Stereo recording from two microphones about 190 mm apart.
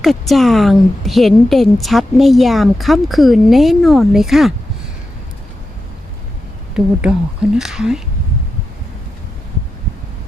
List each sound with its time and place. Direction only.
0.0 s a woman's voice: centre (ahead or behind)
6.8 s a woman's voice: 5° right (ahead or behind)